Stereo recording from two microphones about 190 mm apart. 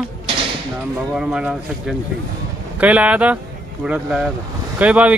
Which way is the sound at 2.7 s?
5° right (ahead or behind).